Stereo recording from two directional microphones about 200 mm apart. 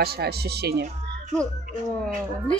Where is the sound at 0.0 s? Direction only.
50° right (ahead or behind).